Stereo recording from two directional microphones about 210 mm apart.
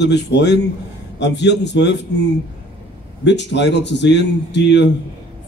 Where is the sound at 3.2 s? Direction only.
55° left (ahead or behind).